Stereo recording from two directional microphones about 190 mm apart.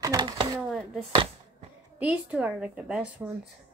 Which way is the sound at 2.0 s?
5° right (ahead or behind).